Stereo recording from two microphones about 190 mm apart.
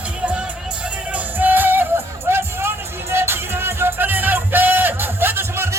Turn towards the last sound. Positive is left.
turn(degrees=-15)  # may be behind; listen again after turning